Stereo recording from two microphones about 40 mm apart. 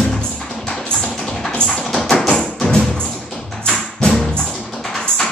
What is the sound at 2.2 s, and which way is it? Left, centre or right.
Music, centre.